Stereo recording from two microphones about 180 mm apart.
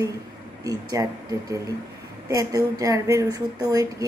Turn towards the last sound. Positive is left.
turn(degrees=-20)  # may be behind; listen again after turning